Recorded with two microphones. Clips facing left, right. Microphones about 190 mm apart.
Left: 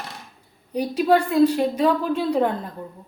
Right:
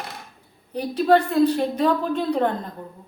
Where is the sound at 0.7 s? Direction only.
10° left (ahead or behind).